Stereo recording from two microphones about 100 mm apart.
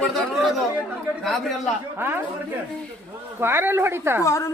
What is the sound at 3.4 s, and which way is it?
Speech, 20° right (ahead or behind).